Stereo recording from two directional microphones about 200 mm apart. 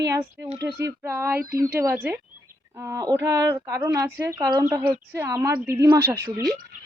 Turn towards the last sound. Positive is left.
turn(degrees=-15)  # may be behind; listen again after turning